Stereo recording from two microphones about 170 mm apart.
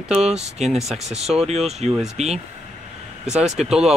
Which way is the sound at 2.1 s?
40° right (ahead or behind).